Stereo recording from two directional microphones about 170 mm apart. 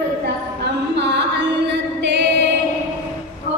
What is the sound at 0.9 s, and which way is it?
Music, 90° right.